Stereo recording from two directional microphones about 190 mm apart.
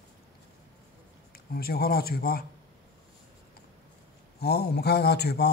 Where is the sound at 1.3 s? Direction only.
55° left (ahead or behind).